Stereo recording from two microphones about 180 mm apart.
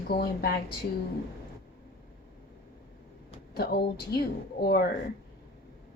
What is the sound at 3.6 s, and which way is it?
A woman's voice, 65° left (ahead or behind).